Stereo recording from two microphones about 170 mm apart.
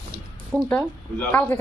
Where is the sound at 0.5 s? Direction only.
10° left (ahead or behind).